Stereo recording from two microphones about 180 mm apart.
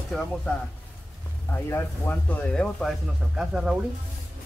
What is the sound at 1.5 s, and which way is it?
Speech, 15° left (ahead or behind).